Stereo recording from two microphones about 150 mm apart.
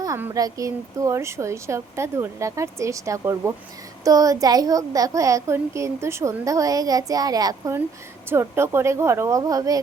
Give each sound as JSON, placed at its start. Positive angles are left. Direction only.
{"t": 0.3, "sound": "a child's voice", "side_deg": -25}